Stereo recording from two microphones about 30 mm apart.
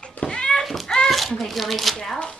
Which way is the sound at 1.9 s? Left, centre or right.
Left.